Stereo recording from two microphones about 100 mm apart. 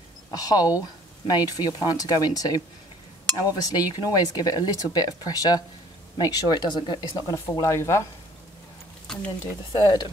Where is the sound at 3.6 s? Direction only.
40° left (ahead or behind).